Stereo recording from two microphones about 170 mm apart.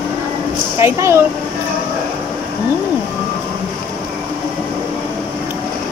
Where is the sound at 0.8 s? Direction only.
15° right (ahead or behind).